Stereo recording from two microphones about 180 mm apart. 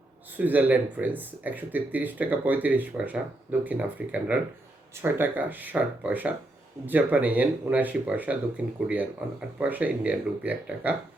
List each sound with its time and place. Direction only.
0.3 s speech: 10° right (ahead or behind)